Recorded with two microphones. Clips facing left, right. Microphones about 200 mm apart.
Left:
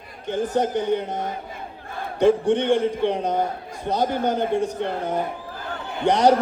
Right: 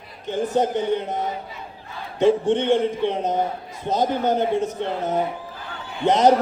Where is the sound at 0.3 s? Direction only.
20° right (ahead or behind).